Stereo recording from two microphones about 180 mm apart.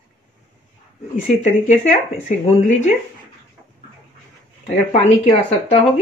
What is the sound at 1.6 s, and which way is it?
Speech, 40° left (ahead or behind).